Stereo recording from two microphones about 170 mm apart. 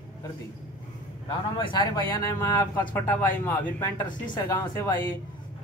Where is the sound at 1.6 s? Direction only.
25° left (ahead or behind).